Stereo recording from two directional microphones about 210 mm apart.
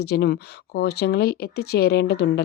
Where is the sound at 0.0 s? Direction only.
50° left (ahead or behind).